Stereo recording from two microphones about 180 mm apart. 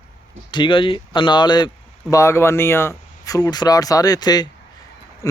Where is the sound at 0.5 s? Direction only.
30° left (ahead or behind).